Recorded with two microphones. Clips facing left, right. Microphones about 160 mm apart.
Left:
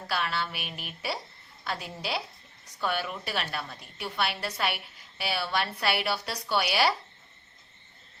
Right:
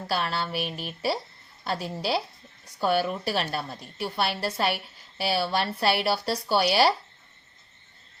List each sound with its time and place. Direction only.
0.1 s a woman's voice: 35° right (ahead or behind)